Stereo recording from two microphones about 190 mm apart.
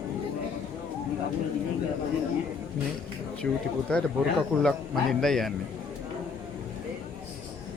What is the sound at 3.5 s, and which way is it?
A man's voice, 5° left (ahead or behind).